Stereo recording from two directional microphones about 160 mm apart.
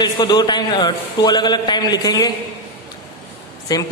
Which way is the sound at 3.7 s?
25° left (ahead or behind).